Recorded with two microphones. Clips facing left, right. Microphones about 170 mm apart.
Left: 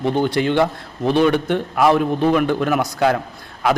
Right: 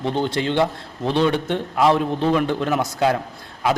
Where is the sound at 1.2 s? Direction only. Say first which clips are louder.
Left 3 dB; 20° right (ahead or behind).